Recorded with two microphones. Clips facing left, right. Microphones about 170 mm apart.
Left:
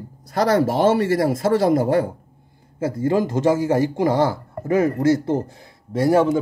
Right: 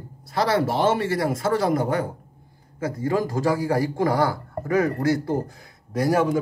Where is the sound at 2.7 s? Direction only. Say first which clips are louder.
Left 4 dB; 25° left (ahead or behind).